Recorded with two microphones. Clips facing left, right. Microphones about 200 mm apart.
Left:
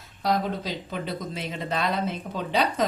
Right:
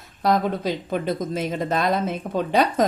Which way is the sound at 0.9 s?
45° right (ahead or behind).